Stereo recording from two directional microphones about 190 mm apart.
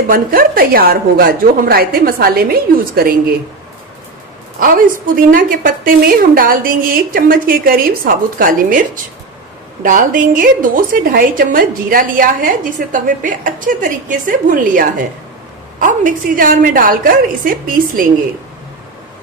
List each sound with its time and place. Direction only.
0.1 s a woman's voice: 50° right (ahead or behind)
4.6 s a woman's voice: 50° right (ahead or behind)
9.8 s a woman's voice: 45° right (ahead or behind)